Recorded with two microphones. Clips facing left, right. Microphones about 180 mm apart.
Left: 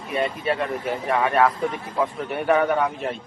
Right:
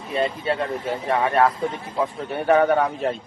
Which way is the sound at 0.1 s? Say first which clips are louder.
Right 1 dB; 25° right (ahead or behind).